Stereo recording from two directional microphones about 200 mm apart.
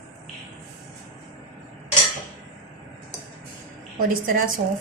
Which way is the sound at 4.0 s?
45° right (ahead or behind).